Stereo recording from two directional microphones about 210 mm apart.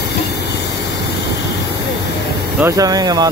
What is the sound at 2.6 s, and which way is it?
Speech, 15° right (ahead or behind).